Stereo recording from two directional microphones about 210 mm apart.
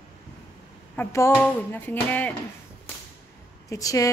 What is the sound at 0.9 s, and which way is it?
Speech, 10° left (ahead or behind).